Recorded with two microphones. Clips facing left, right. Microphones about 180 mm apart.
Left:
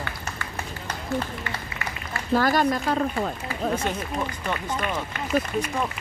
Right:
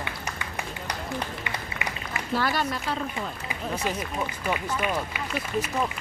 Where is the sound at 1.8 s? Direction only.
20° right (ahead or behind).